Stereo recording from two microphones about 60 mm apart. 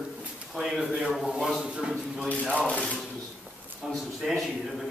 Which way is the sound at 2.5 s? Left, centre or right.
Left.